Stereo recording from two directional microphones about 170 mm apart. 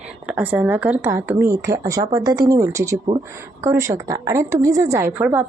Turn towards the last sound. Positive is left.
turn(degrees=-10)  # may be behind; listen again after turning